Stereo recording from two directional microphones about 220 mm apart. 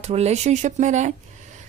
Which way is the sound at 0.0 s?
30° right (ahead or behind).